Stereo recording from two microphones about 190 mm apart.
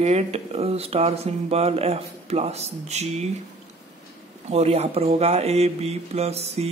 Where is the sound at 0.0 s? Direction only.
35° right (ahead or behind).